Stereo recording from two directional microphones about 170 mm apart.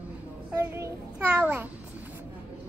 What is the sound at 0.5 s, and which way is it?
A child's voice, 20° right (ahead or behind).